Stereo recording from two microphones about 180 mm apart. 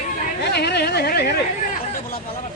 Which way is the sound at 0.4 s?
65° left (ahead or behind).